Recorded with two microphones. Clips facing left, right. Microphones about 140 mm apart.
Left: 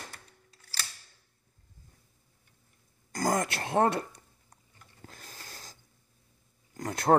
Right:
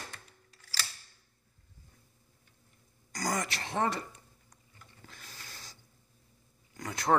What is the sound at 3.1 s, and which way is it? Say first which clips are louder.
Throat clearing: left 5 dB; 50° left (ahead or behind).